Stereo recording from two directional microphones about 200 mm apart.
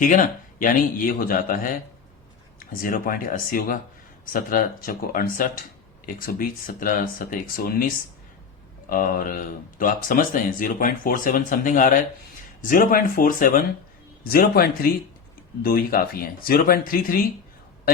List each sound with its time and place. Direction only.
0.0 s speech: 40° left (ahead or behind)